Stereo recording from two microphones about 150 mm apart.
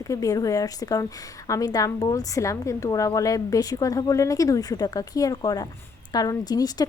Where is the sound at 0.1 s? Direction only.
25° left (ahead or behind).